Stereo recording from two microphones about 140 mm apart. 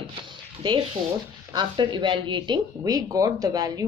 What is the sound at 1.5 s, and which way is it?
Speech, 35° right (ahead or behind).